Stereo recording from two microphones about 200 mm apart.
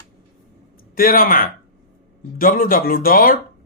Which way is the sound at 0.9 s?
45° left (ahead or behind).